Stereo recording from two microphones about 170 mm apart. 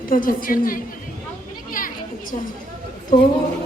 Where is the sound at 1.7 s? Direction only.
55° left (ahead or behind).